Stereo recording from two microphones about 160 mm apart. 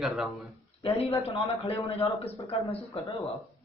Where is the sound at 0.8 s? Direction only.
40° left (ahead or behind).